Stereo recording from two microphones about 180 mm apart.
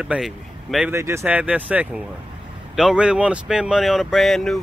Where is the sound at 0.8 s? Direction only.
15° right (ahead or behind); by 4.6 s centre (ahead or behind).